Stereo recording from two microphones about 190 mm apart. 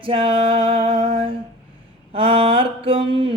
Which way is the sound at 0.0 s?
30° right (ahead or behind).